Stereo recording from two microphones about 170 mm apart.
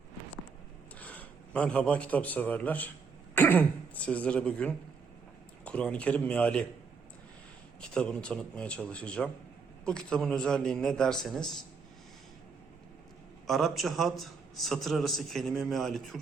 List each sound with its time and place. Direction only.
0.9 s a man's voice: 10° left (ahead or behind)
7.8 s a man's voice: 5° left (ahead or behind)
13.5 s a man's voice: centre (ahead or behind)